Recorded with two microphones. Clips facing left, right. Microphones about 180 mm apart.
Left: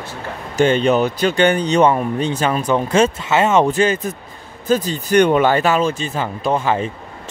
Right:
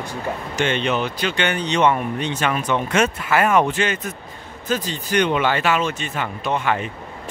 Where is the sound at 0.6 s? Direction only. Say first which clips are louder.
Left 7 dB; 40° left (ahead or behind).